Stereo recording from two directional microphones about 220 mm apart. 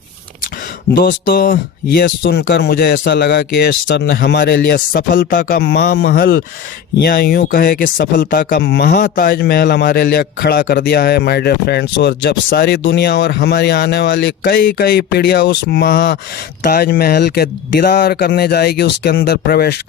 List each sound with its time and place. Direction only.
0.9 s speech: 45° left (ahead or behind)